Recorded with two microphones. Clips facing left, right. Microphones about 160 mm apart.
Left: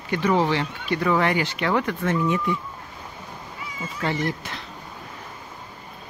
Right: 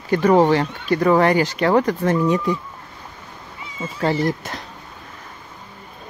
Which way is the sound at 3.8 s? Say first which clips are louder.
Right 6 dB; 35° right (ahead or behind).